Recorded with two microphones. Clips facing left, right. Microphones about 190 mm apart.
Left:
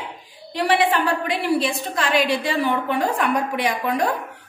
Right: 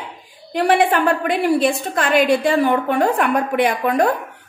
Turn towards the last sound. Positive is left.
turn(degrees=-55)  # may be behind; listen again after turning